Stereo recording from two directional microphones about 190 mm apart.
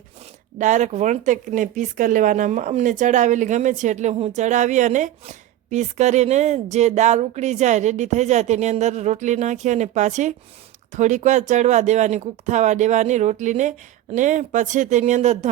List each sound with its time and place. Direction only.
0.6 s speech: 40° right (ahead or behind)